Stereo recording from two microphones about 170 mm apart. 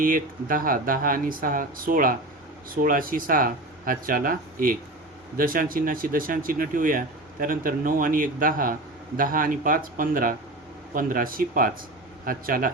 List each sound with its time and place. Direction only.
0.0 s speech: 55° right (ahead or behind)